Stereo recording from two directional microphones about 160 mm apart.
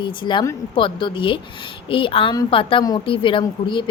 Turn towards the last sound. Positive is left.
turn(degrees=30)  # may be behind; listen again after turning